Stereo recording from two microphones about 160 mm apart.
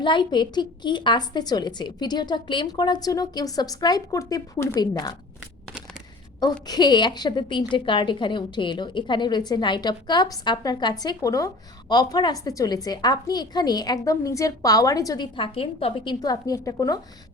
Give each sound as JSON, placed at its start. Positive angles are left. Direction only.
{"t": 0.0, "sound": "a woman's voice", "side_deg": 30}
{"t": 6.7, "sound": "a woman's voice", "side_deg": 25}